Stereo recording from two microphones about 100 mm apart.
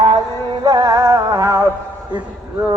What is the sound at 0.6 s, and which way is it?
Music, 35° right (ahead or behind).